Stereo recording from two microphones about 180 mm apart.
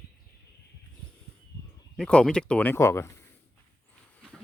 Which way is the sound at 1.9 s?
5° left (ahead or behind).